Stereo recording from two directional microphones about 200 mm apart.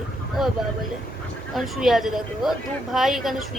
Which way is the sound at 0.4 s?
Centre (ahead or behind).